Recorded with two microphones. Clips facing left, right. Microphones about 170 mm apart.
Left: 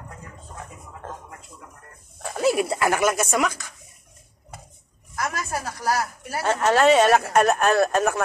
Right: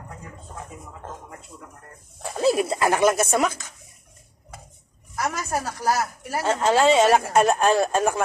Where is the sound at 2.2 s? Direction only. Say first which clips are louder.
Right 1 dB; 25° right (ahead or behind).